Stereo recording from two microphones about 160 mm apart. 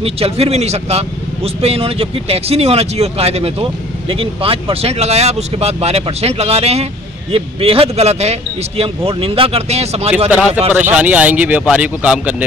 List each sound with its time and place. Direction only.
0.0 s speech: 40° right (ahead or behind)
10.7 s speech: 10° right (ahead or behind)